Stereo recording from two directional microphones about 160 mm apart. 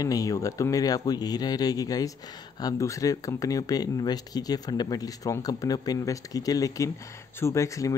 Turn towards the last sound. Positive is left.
turn(degrees=20)  # may be behind; listen again after turning